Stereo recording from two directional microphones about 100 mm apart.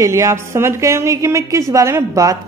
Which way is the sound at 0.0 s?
30° right (ahead or behind).